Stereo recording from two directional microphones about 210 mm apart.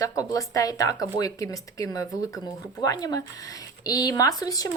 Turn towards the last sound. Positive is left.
turn(degrees=15)  # may be behind; listen again after turning